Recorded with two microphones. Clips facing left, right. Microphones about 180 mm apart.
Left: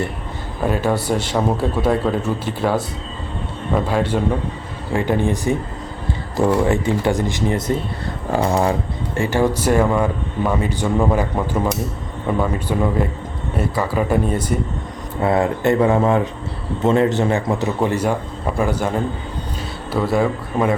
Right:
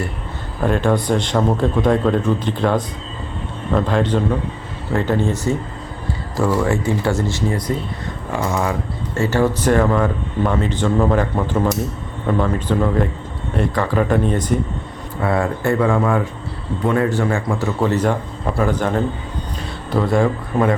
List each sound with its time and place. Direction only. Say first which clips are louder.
0.6 s speech: right 2 dB; 5° left (ahead or behind)
8.4 s speech: left 2 dB; 35° left (ahead or behind)
9.1 s speech: right 1 dB; 15° left (ahead or behind)
15.2 s speech: left 2 dB; 25° left (ahead or behind); by 20.7 s 5° left (ahead or behind)